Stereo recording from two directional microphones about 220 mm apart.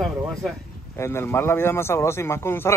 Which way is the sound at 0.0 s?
Centre (ahead or behind).